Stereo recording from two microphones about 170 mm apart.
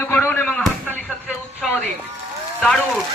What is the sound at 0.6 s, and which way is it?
Chop, centre (ahead or behind).